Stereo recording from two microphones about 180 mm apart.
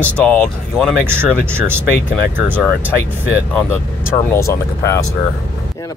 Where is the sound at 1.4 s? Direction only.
10° right (ahead or behind).